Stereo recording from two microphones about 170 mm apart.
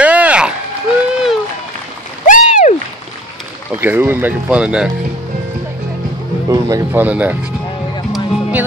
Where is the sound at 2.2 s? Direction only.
50° left (ahead or behind).